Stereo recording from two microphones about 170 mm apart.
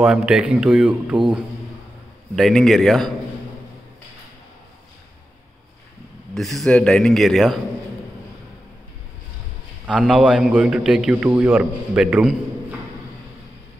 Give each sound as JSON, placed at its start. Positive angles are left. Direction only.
{"t": 0.0, "sound": "a man's voice", "side_deg": -5}
{"t": 2.3, "sound": "a man's voice", "side_deg": 0}
{"t": 6.3, "sound": "a man's voice", "side_deg": 0}
{"t": 9.8, "sound": "a man's voice", "side_deg": 0}